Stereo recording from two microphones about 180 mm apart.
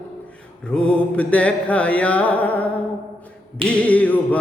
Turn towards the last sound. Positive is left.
turn(degrees=10)  # may be behind; listen again after turning